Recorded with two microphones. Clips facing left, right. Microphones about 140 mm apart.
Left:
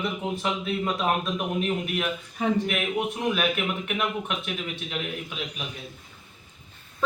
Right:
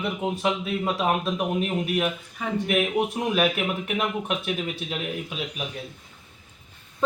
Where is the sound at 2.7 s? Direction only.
35° right (ahead or behind).